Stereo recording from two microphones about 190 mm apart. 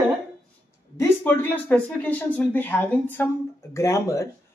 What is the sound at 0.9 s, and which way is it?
A woman's voice, 10° left (ahead or behind).